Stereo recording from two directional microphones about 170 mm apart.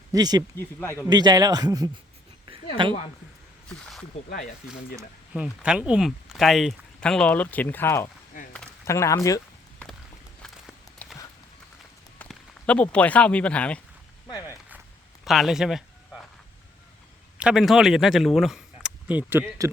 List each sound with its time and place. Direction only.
0.1 s speech: 25° right (ahead or behind)
0.5 s speech: 15° left (ahead or behind)
1.0 s speech: 25° right (ahead or behind)
3.7 s snake: centre (ahead or behind)
4.3 s speech: 55° left (ahead or behind)
5.3 s speech: 5° right (ahead or behind); by 9.4 s 20° left (ahead or behind)
11.0 s clip-clop: 10° left (ahead or behind)
12.2 s speech: 5° left (ahead or behind)
14.3 s walk: 20° left (ahead or behind)
15.2 s a man's voice: centre (ahead or behind)
17.3 s speech: 5° right (ahead or behind)